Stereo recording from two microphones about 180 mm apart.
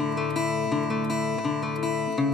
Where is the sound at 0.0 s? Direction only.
Centre (ahead or behind).